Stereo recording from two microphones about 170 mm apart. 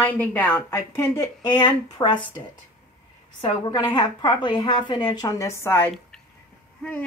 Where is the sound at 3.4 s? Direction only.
25° left (ahead or behind).